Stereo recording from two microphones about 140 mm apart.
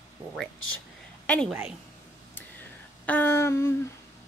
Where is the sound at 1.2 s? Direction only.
10° left (ahead or behind).